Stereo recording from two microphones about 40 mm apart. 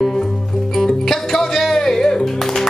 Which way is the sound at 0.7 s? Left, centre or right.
Centre.